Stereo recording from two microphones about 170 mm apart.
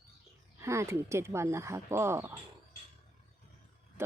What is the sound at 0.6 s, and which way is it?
Speech, 15° right (ahead or behind).